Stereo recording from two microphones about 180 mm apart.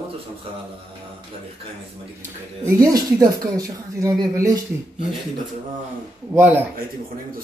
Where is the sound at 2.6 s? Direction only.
20° right (ahead or behind).